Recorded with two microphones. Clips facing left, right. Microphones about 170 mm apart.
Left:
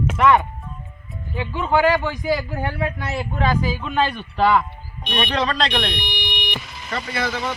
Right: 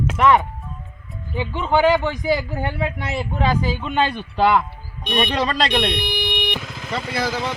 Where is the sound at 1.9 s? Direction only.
5° left (ahead or behind).